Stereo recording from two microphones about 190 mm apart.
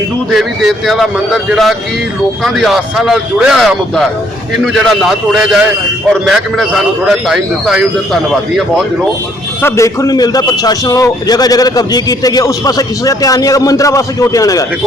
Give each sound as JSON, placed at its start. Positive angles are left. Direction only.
{"t": 0.3, "sound": "a man's voice", "side_deg": 0}
{"t": 9.6, "sound": "a man's voice", "side_deg": 15}